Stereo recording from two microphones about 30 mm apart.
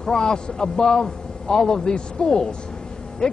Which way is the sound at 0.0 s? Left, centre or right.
Left.